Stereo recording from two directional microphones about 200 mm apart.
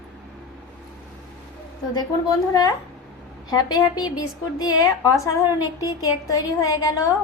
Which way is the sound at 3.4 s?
20° left (ahead or behind).